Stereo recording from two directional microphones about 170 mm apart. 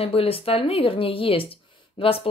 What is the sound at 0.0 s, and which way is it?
Speech, 35° left (ahead or behind).